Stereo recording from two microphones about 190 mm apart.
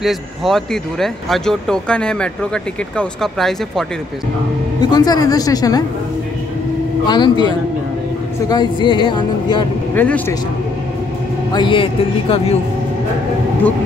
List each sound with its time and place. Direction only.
0.0 s speech: centre (ahead or behind)
4.7 s speech: 20° left (ahead or behind)
7.1 s speech: 25° left (ahead or behind)
9.9 s speech: 10° left (ahead or behind)
11.5 s speech: 25° left (ahead or behind)